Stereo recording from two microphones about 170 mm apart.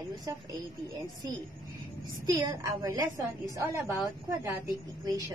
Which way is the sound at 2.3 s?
20° right (ahead or behind).